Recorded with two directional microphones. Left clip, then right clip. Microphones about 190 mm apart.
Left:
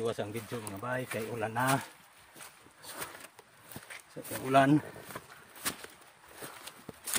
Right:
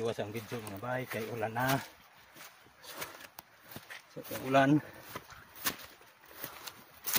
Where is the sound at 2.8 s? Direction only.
15° left (ahead or behind).